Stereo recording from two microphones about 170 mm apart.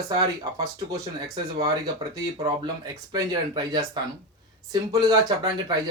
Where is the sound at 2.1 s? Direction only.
25° right (ahead or behind).